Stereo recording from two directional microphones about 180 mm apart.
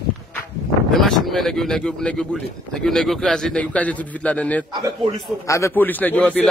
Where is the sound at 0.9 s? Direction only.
Centre (ahead or behind).